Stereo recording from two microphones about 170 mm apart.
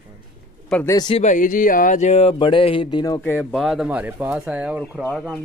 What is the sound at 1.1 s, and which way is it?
Speech, 45° left (ahead or behind).